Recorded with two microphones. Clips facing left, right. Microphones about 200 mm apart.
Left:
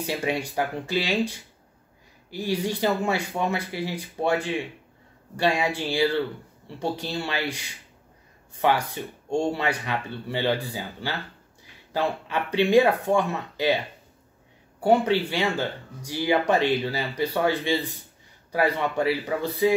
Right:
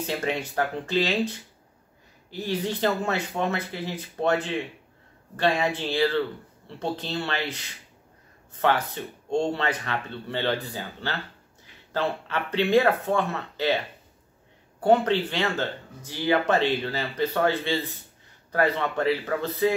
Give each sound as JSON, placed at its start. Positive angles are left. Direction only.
{"t": 0.0, "sound": "speech", "side_deg": 10}
{"t": 2.3, "sound": "speech", "side_deg": 10}
{"t": 14.8, "sound": "speech", "side_deg": 10}